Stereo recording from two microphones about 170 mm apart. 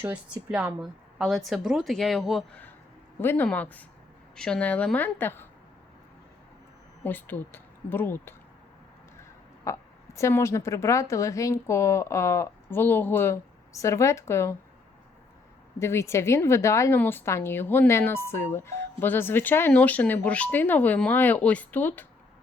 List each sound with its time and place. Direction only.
0.0 s a woman's voice: 10° right (ahead or behind)
3.2 s a woman's voice: 10° left (ahead or behind)
7.0 s speech: 10° left (ahead or behind)
9.6 s a woman's voice: 15° left (ahead or behind)
15.8 s a woman's voice: 15° left (ahead or behind)